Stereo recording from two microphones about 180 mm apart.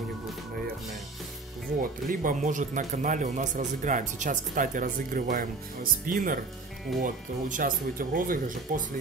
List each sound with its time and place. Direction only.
1.8 s speech: 50° right (ahead or behind)